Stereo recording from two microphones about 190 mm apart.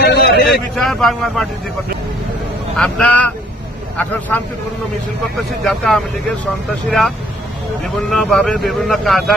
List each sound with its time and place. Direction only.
0.0 s vehicle: 60° left (ahead or behind)
0.7 s speech: centre (ahead or behind)
2.8 s speech: 5° left (ahead or behind)
5.6 s speech: centre (ahead or behind)